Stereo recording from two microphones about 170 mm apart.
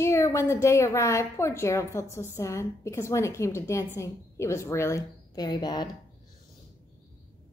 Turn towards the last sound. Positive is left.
turn(degrees=25)  # may be behind; listen again after turning